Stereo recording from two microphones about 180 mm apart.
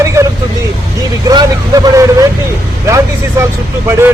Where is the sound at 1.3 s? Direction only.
25° right (ahead or behind).